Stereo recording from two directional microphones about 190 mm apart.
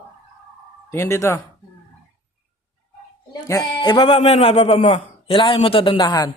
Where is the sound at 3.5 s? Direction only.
20° left (ahead or behind).